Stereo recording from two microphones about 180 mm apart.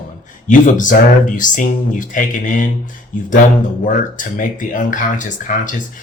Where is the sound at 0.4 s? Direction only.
45° left (ahead or behind).